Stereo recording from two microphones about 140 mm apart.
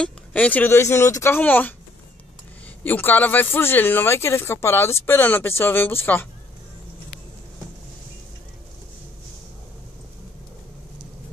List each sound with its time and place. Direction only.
0.0 s speech: 10° left (ahead or behind)
2.8 s speech: 15° left (ahead or behind)